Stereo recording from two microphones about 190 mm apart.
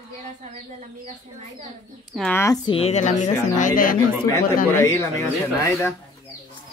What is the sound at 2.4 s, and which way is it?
A woman's voice, 20° left (ahead or behind).